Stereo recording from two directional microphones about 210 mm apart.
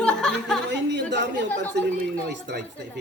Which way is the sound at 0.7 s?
55° right (ahead or behind).